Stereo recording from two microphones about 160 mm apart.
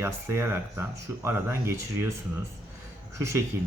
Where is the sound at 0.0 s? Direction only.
15° right (ahead or behind).